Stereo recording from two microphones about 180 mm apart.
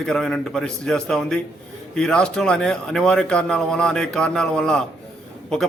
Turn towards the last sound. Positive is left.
turn(degrees=5)  # may be behind; listen again after turning